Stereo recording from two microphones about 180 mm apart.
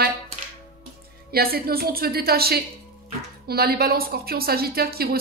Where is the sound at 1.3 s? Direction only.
60° right (ahead or behind).